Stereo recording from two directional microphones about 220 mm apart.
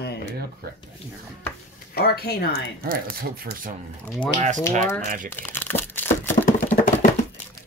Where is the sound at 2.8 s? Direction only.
40° right (ahead or behind).